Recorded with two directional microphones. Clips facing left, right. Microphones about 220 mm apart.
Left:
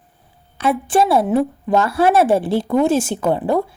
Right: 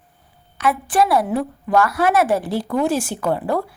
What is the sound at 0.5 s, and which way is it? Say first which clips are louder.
Speech: left 2 dB; 25° left (ahead or behind).